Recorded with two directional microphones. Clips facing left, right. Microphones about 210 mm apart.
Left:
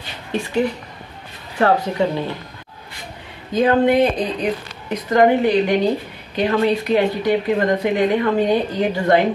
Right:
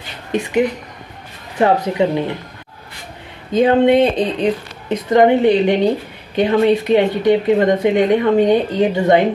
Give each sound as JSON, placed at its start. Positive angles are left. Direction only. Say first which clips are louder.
{"t": 0.3, "sound": "a woman's voice", "louder": "right 3 dB", "side_deg": -15}
{"t": 3.5, "sound": "speech", "louder": "right 3 dB", "side_deg": -25}